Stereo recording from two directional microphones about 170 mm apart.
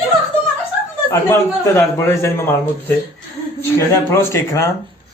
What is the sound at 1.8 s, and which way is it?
Speech, 15° left (ahead or behind).